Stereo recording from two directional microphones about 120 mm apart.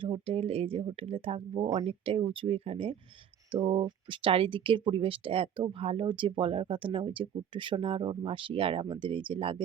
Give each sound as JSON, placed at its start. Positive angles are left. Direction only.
{"t": 0.0, "sound": "speech", "side_deg": -50}
{"t": 3.6, "sound": "speech", "side_deg": -40}